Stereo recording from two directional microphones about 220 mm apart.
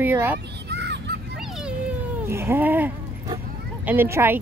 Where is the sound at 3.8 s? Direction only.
10° right (ahead or behind).